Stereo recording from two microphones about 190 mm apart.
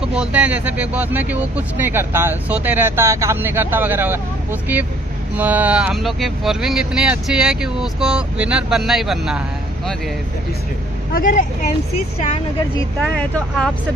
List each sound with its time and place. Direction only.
0.1 s speech: 5° right (ahead or behind)
5.3 s speech: 10° right (ahead or behind)
11.1 s speech: 45° left (ahead or behind)
13.1 s speech: 5° left (ahead or behind)